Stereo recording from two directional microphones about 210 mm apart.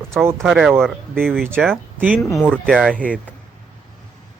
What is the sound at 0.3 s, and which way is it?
Speech, centre (ahead or behind).